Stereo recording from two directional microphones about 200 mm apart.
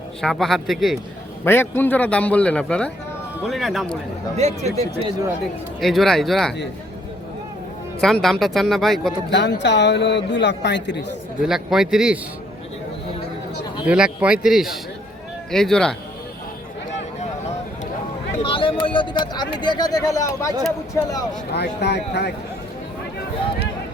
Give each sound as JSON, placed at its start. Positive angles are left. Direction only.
{"t": 0.2, "sound": "speech", "side_deg": 0}
{"t": 1.5, "sound": "a man's voice", "side_deg": 10}
{"t": 4.4, "sound": "speech", "side_deg": -35}
{"t": 5.8, "sound": "speech", "side_deg": 0}
{"t": 8.0, "sound": "speech", "side_deg": 0}
{"t": 9.3, "sound": "a man's voice", "side_deg": 60}
{"t": 11.3, "sound": "speech", "side_deg": 0}
{"t": 13.8, "sound": "speech", "side_deg": -5}
{"t": 18.4, "sound": "a man's voice", "side_deg": 25}
{"t": 21.5, "sound": "a man's voice", "side_deg": 55}